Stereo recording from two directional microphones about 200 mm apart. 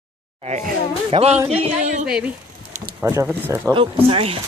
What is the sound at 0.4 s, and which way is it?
Speech, 35° right (ahead or behind).